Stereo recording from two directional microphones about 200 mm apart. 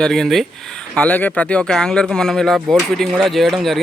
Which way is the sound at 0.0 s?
Centre (ahead or behind).